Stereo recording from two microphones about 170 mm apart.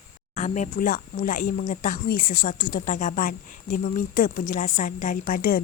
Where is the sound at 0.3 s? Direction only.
45° left (ahead or behind).